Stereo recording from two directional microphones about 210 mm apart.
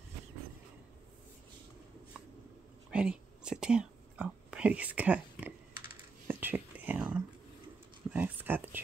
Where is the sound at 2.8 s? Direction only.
5° right (ahead or behind).